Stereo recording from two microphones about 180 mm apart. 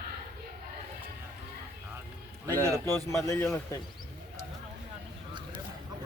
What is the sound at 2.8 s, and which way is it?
Speech, 15° left (ahead or behind).